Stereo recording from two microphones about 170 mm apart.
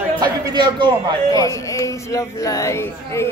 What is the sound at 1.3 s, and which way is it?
Speech, 20° left (ahead or behind).